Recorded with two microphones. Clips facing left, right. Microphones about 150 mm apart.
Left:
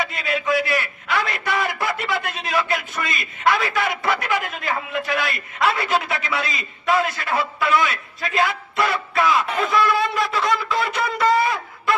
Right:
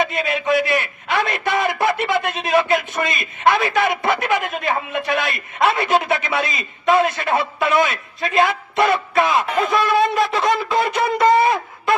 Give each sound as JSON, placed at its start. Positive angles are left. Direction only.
{"t": 0.0, "sound": "a man's voice", "side_deg": -20}